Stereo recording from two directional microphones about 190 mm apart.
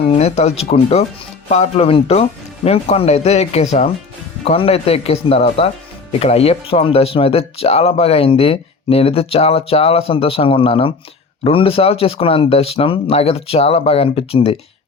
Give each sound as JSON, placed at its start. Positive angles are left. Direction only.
{"t": 0.1, "sound": "speech", "side_deg": 35}